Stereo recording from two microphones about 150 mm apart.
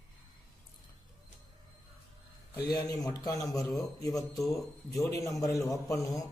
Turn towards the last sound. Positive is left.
turn(degrees=20)  # may be behind; listen again after turning